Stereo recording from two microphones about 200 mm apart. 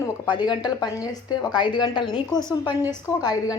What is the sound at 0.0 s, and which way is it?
A woman's voice, 20° left (ahead or behind).